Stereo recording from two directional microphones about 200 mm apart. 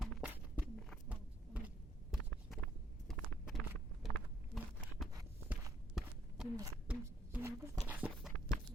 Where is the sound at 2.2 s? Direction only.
10° left (ahead or behind).